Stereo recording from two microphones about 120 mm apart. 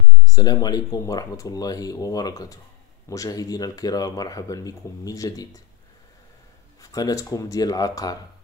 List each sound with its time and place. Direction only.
0.3 s speech: 35° left (ahead or behind)
6.8 s speech: 30° left (ahead or behind)